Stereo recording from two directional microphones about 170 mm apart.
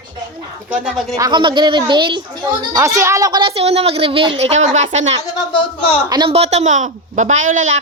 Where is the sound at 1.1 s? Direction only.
25° right (ahead or behind).